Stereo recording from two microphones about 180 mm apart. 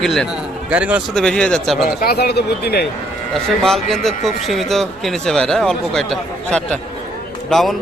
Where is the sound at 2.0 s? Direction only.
60° left (ahead or behind).